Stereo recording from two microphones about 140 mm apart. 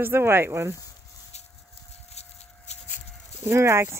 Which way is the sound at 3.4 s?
20° right (ahead or behind).